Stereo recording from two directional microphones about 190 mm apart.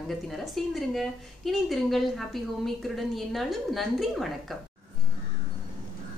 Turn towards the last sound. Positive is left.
turn(degrees=0)  # may be behind; listen again after turning